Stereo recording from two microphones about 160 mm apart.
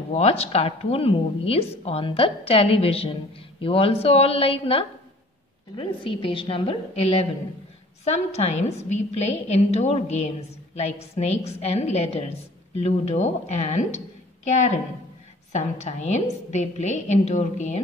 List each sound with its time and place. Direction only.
0.1 s a woman's voice: 40° left (ahead or behind)